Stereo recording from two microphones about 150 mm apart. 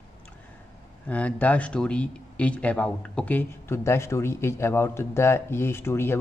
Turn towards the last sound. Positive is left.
turn(degrees=15)  # may be behind; listen again after turning